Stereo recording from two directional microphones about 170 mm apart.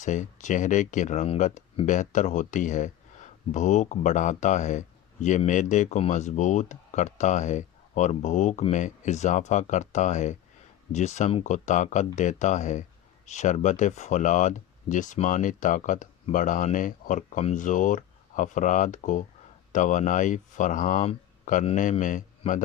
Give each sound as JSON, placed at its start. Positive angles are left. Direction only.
{"t": 0.0, "sound": "speech", "side_deg": 45}